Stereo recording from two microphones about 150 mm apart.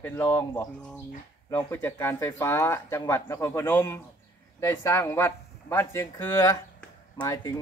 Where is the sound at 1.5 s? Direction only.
15° left (ahead or behind).